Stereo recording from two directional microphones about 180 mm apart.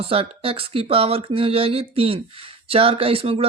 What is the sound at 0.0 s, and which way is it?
A woman's voice, 30° right (ahead or behind).